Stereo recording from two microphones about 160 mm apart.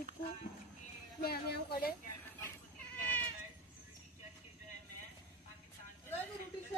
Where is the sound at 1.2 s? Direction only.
75° left (ahead or behind).